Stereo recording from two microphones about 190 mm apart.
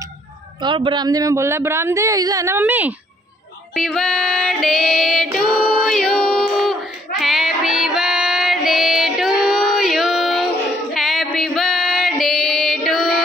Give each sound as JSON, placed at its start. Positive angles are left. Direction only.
{"t": 0.6, "sound": "speech", "side_deg": -25}
{"t": 3.7, "sound": "female singing", "side_deg": 0}